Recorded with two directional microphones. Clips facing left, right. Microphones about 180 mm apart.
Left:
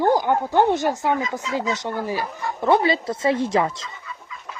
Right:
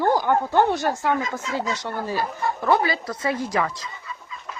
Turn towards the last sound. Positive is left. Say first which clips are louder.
# left 4 dB
turn(degrees=25)  # may be behind; listen again after turning